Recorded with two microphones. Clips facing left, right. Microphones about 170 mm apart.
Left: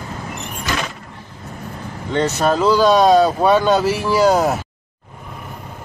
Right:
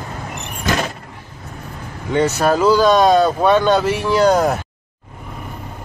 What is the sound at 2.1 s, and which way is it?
Speech, 5° right (ahead or behind).